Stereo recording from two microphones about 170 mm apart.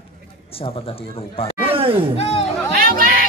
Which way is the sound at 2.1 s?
35° left (ahead or behind).